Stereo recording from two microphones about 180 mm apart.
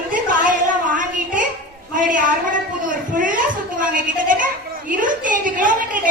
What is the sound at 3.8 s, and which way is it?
A woman's voice, 50° right (ahead or behind).